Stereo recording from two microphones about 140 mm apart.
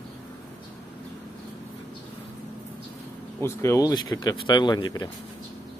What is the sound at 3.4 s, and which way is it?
Speech, 20° left (ahead or behind).